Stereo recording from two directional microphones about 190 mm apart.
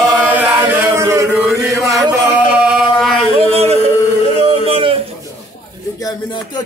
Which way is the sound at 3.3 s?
30° right (ahead or behind).